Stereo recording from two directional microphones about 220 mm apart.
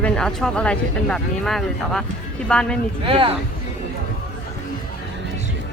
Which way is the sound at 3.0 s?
25° right (ahead or behind).